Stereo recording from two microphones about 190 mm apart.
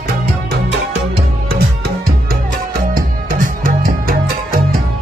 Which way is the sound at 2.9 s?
45° right (ahead or behind).